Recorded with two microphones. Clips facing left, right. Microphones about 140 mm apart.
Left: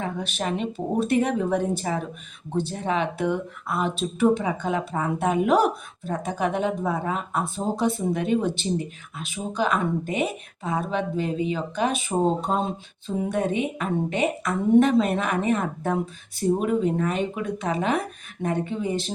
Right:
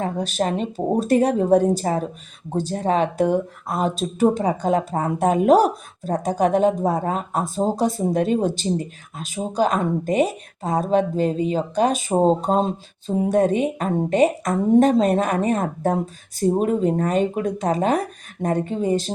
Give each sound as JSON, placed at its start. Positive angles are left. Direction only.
{"t": 0.0, "sound": "speech", "side_deg": -40}